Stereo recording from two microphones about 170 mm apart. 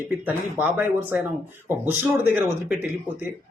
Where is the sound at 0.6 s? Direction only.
10° right (ahead or behind).